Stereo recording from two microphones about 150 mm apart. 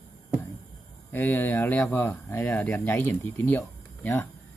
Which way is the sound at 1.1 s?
15° left (ahead or behind).